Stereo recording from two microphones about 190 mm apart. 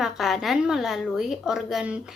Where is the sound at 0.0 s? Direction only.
Centre (ahead or behind).